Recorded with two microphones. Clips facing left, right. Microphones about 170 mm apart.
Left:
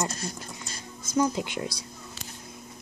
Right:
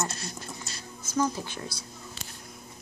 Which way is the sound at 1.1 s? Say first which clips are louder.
Left 3 dB; 15° left (ahead or behind).